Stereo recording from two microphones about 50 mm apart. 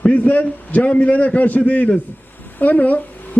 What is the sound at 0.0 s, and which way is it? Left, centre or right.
A man's voice, left.